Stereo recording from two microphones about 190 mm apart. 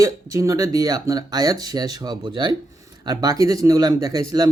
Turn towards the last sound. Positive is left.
turn(degrees=-20)  # may be behind; listen again after turning